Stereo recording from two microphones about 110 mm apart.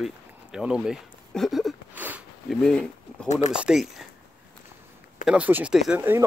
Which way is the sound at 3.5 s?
5° right (ahead or behind).